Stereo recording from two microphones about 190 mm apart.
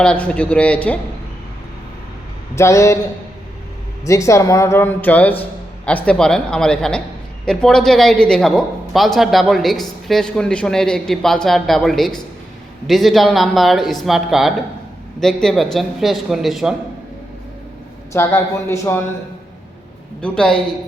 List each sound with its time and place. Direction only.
0.0 s speech: 5° left (ahead or behind)
2.6 s speech: 15° left (ahead or behind)
4.0 s speech: 15° left (ahead or behind); by 16.7 s centre (ahead or behind)
18.1 s speech: 15° left (ahead or behind)
20.2 s speech: 5° left (ahead or behind)